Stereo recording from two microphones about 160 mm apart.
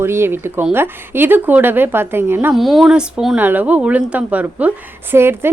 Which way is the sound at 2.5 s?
Centre (ahead or behind).